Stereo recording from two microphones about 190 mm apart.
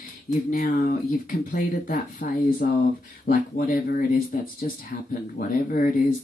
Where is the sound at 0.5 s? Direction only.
45° left (ahead or behind).